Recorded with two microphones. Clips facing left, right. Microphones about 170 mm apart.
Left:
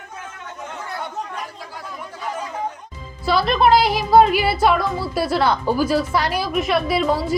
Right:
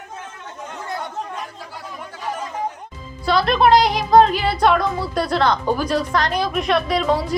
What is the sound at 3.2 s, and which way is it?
A woman's voice, centre (ahead or behind).